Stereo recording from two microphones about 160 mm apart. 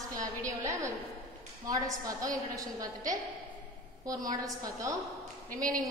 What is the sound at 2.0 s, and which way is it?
Speech, 20° right (ahead or behind).